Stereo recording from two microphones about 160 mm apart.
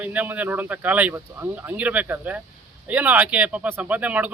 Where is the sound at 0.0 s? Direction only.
10° right (ahead or behind).